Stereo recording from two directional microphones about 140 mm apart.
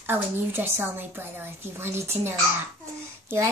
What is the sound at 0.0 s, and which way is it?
A woman's voice, 15° right (ahead or behind).